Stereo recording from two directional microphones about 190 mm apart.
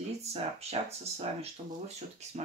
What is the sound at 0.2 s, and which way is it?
Speech, 35° right (ahead or behind).